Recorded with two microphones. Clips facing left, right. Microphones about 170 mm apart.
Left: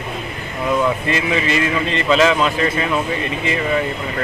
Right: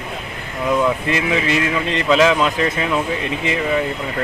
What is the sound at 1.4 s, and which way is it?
Speech, 65° right (ahead or behind).